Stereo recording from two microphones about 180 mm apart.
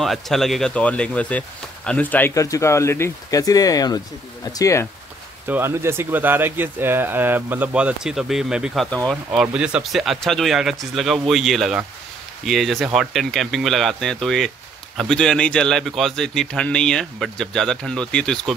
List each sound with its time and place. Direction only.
0.0 s speech: centre (ahead or behind); by 4.8 s 20° left (ahead or behind)
5.5 s speech: 15° right (ahead or behind); by 18.5 s 5° left (ahead or behind)